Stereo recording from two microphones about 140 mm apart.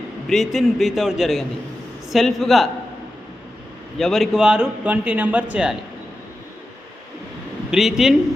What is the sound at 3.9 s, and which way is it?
A man's voice, centre (ahead or behind).